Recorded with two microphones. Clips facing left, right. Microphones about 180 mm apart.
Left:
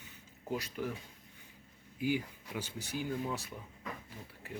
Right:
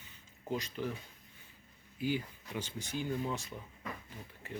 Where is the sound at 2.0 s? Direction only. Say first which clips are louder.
Left 1 dB; 10° left (ahead or behind).